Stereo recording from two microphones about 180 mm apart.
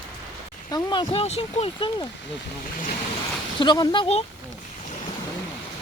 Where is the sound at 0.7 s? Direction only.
25° left (ahead or behind).